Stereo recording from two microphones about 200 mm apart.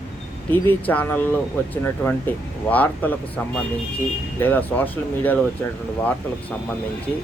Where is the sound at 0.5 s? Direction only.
10° left (ahead or behind).